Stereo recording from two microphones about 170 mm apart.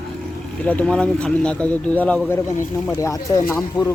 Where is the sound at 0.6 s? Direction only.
5° left (ahead or behind).